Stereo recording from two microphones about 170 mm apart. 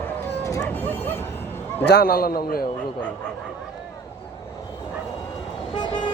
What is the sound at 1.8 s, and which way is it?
Speech, 65° left (ahead or behind).